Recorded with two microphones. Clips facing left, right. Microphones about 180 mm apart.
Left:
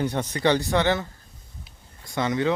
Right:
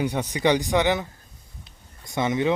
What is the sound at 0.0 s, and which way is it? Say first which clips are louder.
Speech: right 1 dB; 15° right (ahead or behind).